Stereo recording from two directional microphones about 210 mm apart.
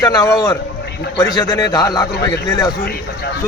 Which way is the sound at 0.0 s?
15° left (ahead or behind).